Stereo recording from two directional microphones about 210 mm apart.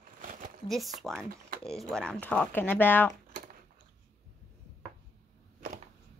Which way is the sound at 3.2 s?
40° right (ahead or behind).